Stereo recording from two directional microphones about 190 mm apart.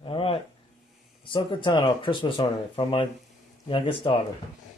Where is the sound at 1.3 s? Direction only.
25° left (ahead or behind).